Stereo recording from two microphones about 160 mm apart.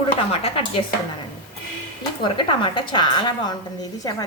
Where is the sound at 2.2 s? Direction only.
30° left (ahead or behind).